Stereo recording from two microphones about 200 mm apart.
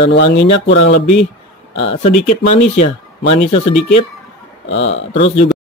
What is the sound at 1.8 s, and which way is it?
Speech, 30° left (ahead or behind).